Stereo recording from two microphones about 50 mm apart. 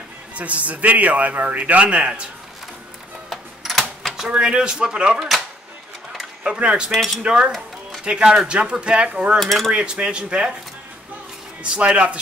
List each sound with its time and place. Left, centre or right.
0.4 s a man's voice: right
3.3 s mechanisms: centre
4.2 s a man's voice: centre
6.1 s a sound: centre
7.2 s a man's voice: centre
9.4 s cutlery: centre
9.7 s a man's voice: right
11.6 s a man's voice: right